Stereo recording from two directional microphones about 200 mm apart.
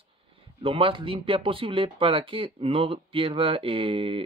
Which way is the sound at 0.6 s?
25° right (ahead or behind).